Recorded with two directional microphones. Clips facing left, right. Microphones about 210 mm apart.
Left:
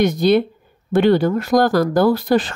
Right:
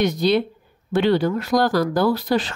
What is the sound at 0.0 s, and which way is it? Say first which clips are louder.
Speech: left 4 dB; 50° left (ahead or behind).